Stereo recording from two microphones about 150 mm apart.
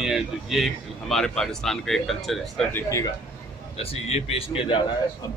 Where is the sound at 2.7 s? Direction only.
20° left (ahead or behind).